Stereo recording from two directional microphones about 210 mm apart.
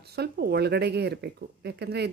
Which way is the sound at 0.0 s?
50° right (ahead or behind).